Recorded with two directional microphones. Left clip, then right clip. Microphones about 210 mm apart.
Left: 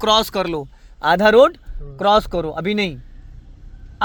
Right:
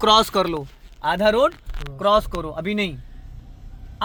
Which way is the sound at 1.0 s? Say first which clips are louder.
Left 6 dB; 50° left (ahead or behind).